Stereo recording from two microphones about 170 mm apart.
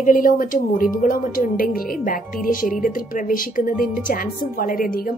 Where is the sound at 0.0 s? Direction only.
50° left (ahead or behind).